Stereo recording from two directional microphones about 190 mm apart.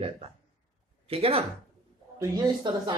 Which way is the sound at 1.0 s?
30° right (ahead or behind).